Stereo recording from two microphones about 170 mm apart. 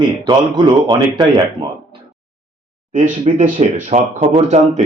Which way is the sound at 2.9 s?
50° right (ahead or behind).